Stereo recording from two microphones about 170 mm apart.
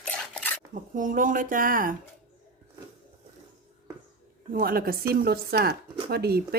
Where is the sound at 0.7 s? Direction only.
50° right (ahead or behind).